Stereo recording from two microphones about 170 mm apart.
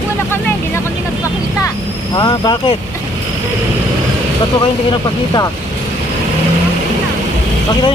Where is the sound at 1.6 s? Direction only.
25° left (ahead or behind).